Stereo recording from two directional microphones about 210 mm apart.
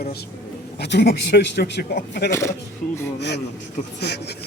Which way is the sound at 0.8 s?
50° left (ahead or behind).